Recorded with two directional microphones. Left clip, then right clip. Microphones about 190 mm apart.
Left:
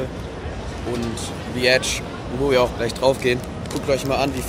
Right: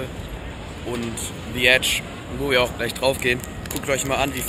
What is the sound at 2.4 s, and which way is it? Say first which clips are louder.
Speech: left 2 dB; 10° left (ahead or behind).